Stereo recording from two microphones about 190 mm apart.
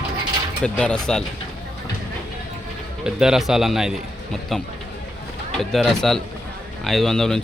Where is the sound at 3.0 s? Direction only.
5° right (ahead or behind).